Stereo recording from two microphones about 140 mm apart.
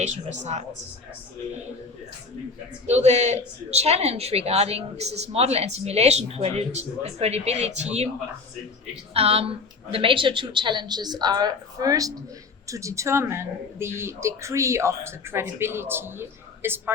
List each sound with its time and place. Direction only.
0.0 s speech: 55° right (ahead or behind)
2.8 s a woman's voice: 55° right (ahead or behind)
9.1 s a woman's voice: 45° right (ahead or behind); by 16.9 s 15° right (ahead or behind)